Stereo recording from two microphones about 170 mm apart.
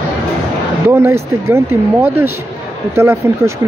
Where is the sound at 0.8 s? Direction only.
15° right (ahead or behind).